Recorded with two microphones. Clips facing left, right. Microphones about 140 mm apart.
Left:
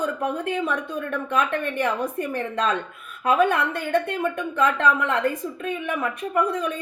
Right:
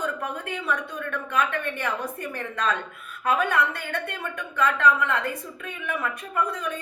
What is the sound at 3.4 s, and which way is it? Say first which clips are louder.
A woman's voice: left 4 dB; 45° left (ahead or behind).